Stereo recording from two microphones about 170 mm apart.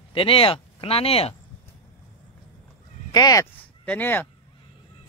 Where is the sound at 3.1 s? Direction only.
20° left (ahead or behind).